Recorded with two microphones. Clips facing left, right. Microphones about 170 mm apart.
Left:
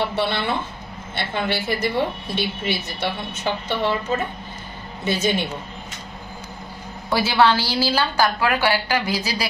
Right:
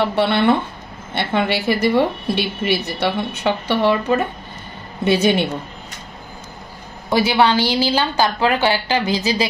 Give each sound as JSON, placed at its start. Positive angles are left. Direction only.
{"t": 0.1, "sound": "a woman's voice", "side_deg": -60}
{"t": 7.1, "sound": "a woman's voice", "side_deg": -20}